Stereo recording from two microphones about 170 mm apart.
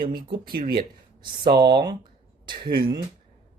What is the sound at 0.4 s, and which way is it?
Speech, 60° right (ahead or behind).